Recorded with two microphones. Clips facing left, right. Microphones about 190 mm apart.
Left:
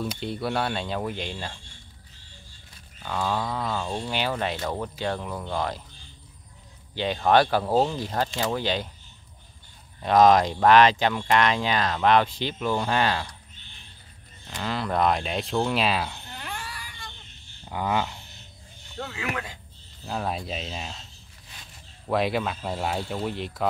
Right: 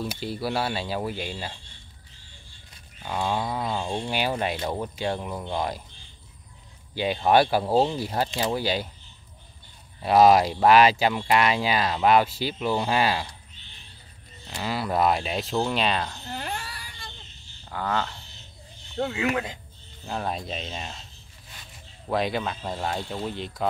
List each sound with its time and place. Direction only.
0.2 s speech: 5° right (ahead or behind)
3.0 s speech: 10° right (ahead or behind)
7.2 s speech: 10° right (ahead or behind)
10.0 s speech: 10° right (ahead or behind)
14.5 s speech: 10° right (ahead or behind)
16.4 s a sound: 30° right (ahead or behind)
17.6 s a sound: 15° left (ahead or behind)
18.9 s speech: 25° right (ahead or behind)
20.1 s speech: centre (ahead or behind)
22.1 s speech: centre (ahead or behind)